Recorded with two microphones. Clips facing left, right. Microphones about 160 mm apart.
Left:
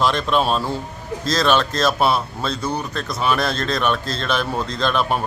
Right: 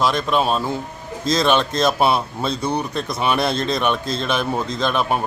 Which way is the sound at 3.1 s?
20° right (ahead or behind).